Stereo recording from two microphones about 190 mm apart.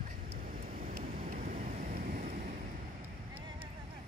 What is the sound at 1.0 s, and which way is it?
Vehicle, 45° right (ahead or behind).